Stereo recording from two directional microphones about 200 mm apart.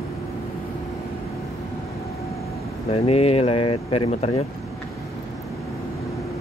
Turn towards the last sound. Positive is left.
turn(degrees=30)  # may be behind; listen again after turning